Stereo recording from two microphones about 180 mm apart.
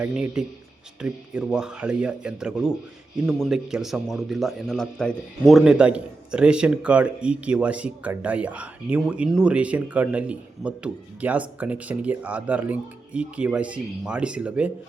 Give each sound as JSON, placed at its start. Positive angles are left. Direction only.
{"t": 0.0, "sound": "a man's voice", "side_deg": -5}